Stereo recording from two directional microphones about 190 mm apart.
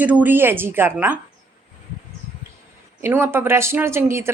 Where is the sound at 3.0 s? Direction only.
10° right (ahead or behind).